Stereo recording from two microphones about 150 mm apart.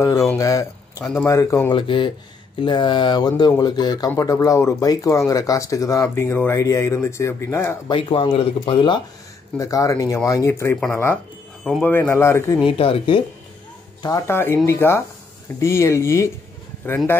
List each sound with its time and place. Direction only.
0.4 s speech: 20° left (ahead or behind)
1.8 s speech: 35° left (ahead or behind); by 7.7 s 15° left (ahead or behind)
7.9 s speech: 35° left (ahead or behind)
9.6 s speech: 20° left (ahead or behind)
12.6 s speech: 35° left (ahead or behind)
14.0 s speech: 20° left (ahead or behind)